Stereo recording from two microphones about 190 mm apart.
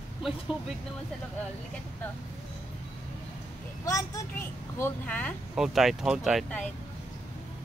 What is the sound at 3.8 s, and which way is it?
Speech, 15° left (ahead or behind).